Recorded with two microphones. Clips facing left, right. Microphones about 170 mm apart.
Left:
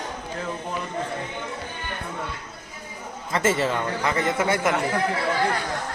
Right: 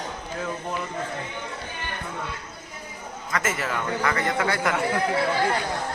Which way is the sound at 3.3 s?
30° left (ahead or behind).